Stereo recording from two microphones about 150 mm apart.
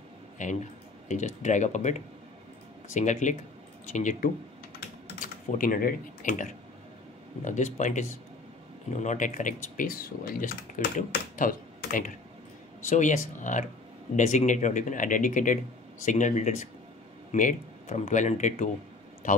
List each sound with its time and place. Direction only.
0.4 s a man's voice: 55° left (ahead or behind)